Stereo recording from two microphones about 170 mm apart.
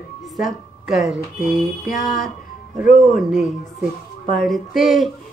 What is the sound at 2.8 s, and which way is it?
Speech, 50° left (ahead or behind).